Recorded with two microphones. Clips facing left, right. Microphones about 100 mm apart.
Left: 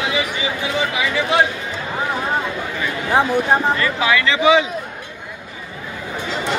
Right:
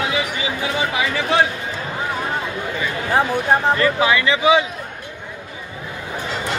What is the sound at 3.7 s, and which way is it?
Speech, 30° right (ahead or behind).